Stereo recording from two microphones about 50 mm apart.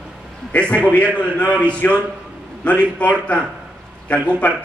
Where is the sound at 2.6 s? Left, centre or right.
Left.